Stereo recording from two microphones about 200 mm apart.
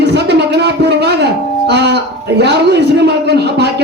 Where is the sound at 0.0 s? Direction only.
55° right (ahead or behind).